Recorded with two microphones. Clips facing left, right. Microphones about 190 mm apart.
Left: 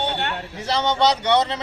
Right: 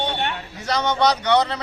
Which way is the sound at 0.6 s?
25° left (ahead or behind).